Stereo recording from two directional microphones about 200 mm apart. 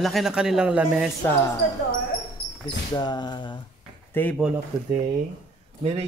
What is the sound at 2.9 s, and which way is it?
Speech, 20° left (ahead or behind).